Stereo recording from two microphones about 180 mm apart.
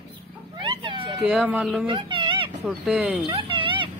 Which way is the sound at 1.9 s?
30° right (ahead or behind).